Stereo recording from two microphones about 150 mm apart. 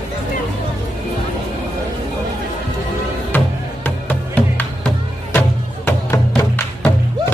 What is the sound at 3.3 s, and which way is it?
Music, 10° left (ahead or behind).